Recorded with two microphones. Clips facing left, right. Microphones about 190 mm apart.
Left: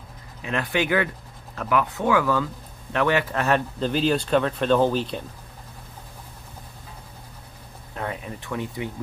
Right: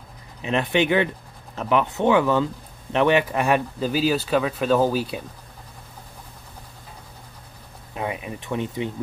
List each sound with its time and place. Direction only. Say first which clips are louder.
0.4 s speech: right 4 dB; 20° right (ahead or behind)
7.9 s speech: right 2 dB; 15° right (ahead or behind)